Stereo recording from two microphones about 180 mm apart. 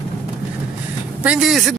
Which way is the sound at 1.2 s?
5° right (ahead or behind).